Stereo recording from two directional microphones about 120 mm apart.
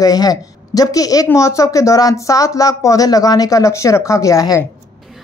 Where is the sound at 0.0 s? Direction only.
30° left (ahead or behind).